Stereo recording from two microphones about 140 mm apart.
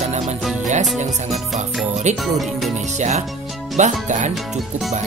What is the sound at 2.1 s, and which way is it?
Music, 55° right (ahead or behind).